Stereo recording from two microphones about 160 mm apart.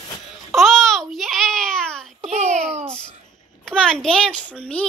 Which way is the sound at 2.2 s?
45° right (ahead or behind).